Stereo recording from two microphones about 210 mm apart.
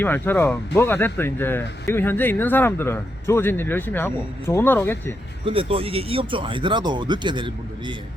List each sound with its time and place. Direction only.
0.0 s speech: 10° left (ahead or behind)
5.5 s speech: 25° right (ahead or behind)